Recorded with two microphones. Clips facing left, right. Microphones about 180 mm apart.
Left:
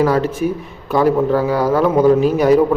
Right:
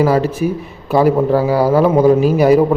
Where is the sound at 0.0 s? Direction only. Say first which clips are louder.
Right 2 dB; 5° right (ahead or behind).